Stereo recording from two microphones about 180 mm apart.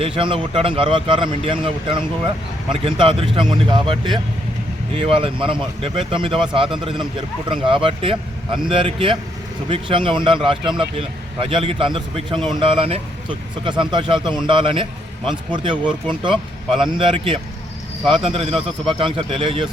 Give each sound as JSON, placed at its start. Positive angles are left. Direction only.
{"t": 0.0, "sound": "speech", "side_deg": -30}